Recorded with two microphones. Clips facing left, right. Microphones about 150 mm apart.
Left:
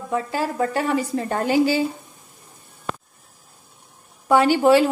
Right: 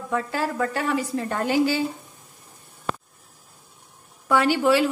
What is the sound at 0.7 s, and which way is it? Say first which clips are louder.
Speech: left 3 dB; 30° left (ahead or behind).